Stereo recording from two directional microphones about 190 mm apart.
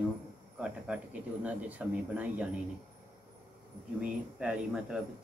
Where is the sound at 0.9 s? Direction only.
5° right (ahead or behind).